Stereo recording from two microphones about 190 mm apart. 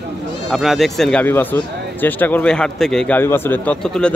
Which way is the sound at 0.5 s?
Centre (ahead or behind).